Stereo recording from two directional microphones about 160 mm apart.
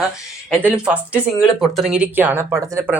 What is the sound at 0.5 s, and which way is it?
Speech, 5° right (ahead or behind).